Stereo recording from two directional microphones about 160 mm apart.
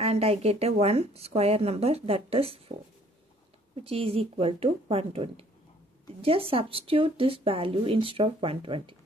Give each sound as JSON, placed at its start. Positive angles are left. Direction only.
{"t": 0.0, "sound": "a woman's voice", "side_deg": -40}